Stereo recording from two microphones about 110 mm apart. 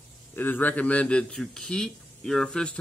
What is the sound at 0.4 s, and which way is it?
A man's voice, 15° left (ahead or behind).